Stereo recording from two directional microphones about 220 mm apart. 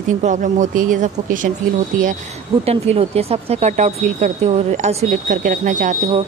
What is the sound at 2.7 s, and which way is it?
Speech, 30° right (ahead or behind).